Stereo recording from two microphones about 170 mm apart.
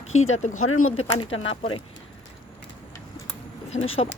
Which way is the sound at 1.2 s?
30° left (ahead or behind).